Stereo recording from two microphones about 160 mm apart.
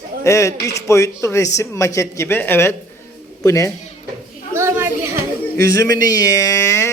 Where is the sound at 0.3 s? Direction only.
20° left (ahead or behind).